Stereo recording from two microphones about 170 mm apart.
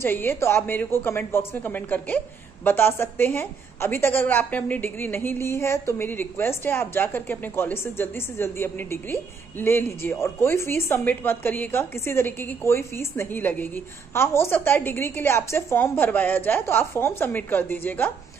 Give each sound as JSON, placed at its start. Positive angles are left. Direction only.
{"t": 0.0, "sound": "a woman's voice", "side_deg": 10}